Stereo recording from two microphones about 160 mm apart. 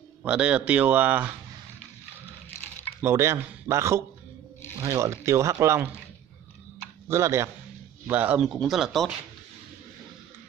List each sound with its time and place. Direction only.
0.2 s speech: 5° right (ahead or behind)
3.0 s speech: 15° right (ahead or behind)
7.1 s speech: 15° right (ahead or behind); by 9.1 s centre (ahead or behind)